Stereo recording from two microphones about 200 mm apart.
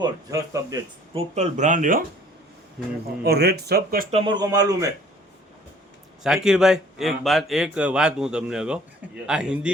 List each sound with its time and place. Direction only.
0.0 s speech: 15° right (ahead or behind)
1.1 s speech: 35° right (ahead or behind)
3.2 s speech: 50° right (ahead or behind)
4.1 s speech: 20° right (ahead or behind)
6.2 s speech: centre (ahead or behind)